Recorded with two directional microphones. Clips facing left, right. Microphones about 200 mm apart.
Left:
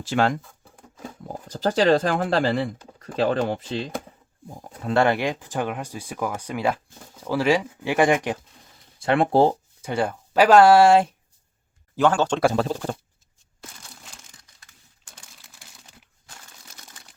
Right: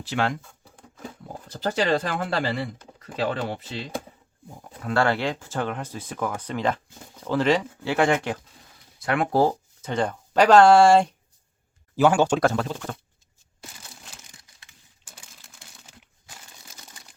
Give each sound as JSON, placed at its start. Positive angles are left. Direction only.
{"t": 0.0, "sound": "speech", "side_deg": 45}
{"t": 1.5, "sound": "speech", "side_deg": 40}
{"t": 4.6, "sound": "speech", "side_deg": 25}
{"t": 9.0, "sound": "speech", "side_deg": 30}
{"t": 9.8, "sound": "speech", "side_deg": 10}
{"t": 11.9, "sound": "speech", "side_deg": -10}
{"t": 12.5, "sound": "speech", "side_deg": 35}
{"t": 13.6, "sound": "a sound", "side_deg": -5}
{"t": 15.0, "sound": "crumpling", "side_deg": 0}